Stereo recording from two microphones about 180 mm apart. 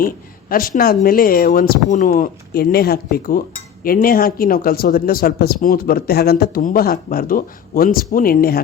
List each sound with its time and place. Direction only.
0.0 s speech: 50° left (ahead or behind)